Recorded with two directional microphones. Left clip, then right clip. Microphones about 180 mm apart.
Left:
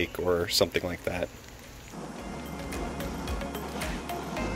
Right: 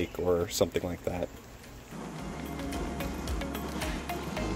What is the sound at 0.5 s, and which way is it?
Speech, 15° right (ahead or behind).